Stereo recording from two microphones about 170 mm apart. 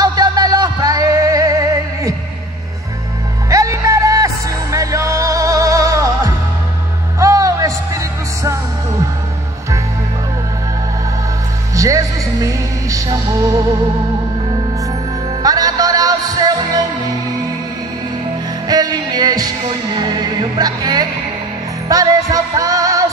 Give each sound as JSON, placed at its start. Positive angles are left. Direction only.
{"t": 0.0, "sound": "music", "side_deg": -25}
{"t": 3.4, "sound": "music", "side_deg": -20}
{"t": 11.7, "sound": "music", "side_deg": -20}
{"t": 15.4, "sound": "music", "side_deg": -20}
{"t": 18.7, "sound": "music", "side_deg": -25}